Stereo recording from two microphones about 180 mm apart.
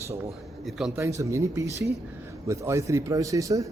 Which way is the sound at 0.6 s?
Centre (ahead or behind).